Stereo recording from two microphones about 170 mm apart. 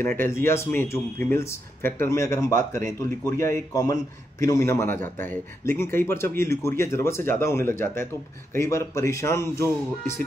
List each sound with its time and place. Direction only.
0.0 s speech: 15° left (ahead or behind)